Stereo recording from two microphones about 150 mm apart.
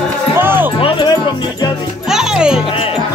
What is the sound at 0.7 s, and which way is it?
Music, 35° left (ahead or behind).